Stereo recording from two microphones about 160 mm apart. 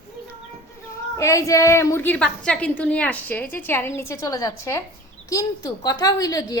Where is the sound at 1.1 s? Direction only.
20° left (ahead or behind).